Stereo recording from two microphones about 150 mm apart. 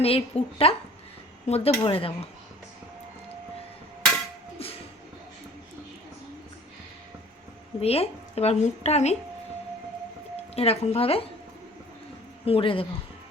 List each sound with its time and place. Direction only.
0.0 s a woman's voice: 40° left (ahead or behind)
7.8 s a woman's voice: 40° left (ahead or behind)
10.5 s a woman's voice: 45° left (ahead or behind)
12.5 s a woman's voice: 40° left (ahead or behind)